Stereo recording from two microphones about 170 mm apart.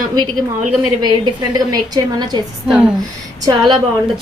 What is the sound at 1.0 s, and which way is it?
A woman's voice, 25° right (ahead or behind).